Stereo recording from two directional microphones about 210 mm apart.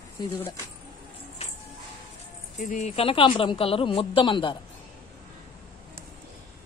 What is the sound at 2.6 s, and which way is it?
Speech, 35° left (ahead or behind).